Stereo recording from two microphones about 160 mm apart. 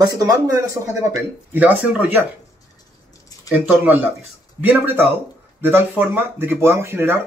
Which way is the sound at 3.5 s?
10° right (ahead or behind).